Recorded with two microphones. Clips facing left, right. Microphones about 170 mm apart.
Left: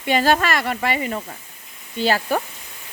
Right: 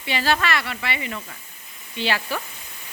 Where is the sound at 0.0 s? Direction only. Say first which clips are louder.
Left 5 dB; 45° left (ahead or behind).